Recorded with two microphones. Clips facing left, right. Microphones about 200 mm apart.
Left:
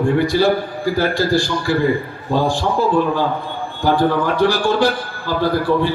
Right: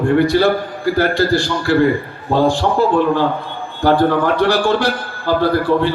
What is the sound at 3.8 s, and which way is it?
A man's voice, 60° right (ahead or behind).